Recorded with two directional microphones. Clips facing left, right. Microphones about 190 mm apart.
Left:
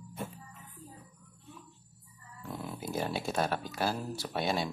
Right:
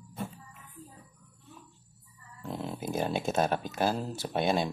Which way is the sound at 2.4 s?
25° right (ahead or behind).